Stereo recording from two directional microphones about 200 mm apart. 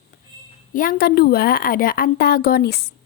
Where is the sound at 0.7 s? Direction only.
45° left (ahead or behind).